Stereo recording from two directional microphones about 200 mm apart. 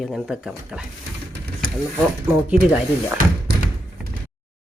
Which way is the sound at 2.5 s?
5° right (ahead or behind).